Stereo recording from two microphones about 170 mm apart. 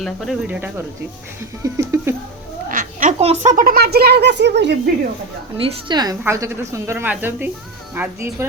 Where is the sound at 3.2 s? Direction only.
40° right (ahead or behind); by 4.9 s 80° right.